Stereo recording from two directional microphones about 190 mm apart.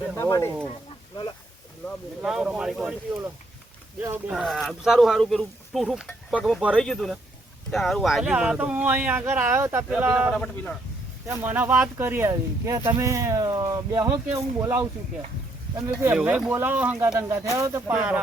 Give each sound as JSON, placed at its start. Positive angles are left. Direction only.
{"t": 0.2, "sound": "speech", "side_deg": 15}
{"t": 2.2, "sound": "speech", "side_deg": -5}
{"t": 4.0, "sound": "speech", "side_deg": -10}
{"t": 10.3, "sound": "speech", "side_deg": 5}
{"t": 11.3, "sound": "speech", "side_deg": -10}
{"t": 16.1, "sound": "speech", "side_deg": -5}